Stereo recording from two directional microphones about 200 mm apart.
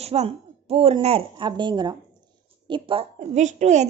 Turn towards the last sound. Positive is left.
turn(degrees=-35)  # may be behind; listen again after turning